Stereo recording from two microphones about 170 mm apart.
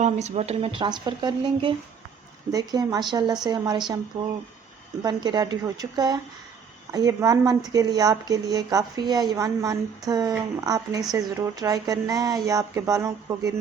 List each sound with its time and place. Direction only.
0.0 s a woman's voice: 40° right (ahead or behind); by 13.5 s 20° right (ahead or behind)